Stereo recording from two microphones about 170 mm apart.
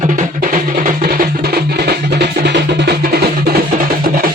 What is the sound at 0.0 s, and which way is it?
Music, 45° right (ahead or behind).